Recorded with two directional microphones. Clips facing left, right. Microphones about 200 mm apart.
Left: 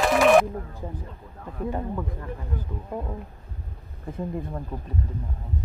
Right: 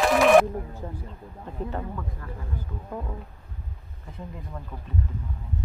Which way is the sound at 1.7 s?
20° left (ahead or behind).